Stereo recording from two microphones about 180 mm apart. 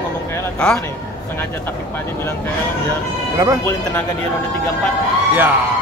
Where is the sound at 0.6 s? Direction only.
5° left (ahead or behind).